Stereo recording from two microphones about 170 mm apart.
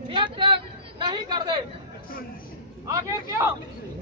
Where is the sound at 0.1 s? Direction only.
30° right (ahead or behind).